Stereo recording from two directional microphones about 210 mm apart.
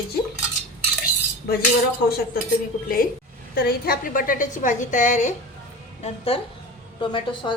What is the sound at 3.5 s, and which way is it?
A woman's voice, 45° left (ahead or behind).